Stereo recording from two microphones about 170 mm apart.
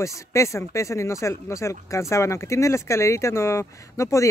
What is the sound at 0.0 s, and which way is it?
Speech, 15° left (ahead or behind).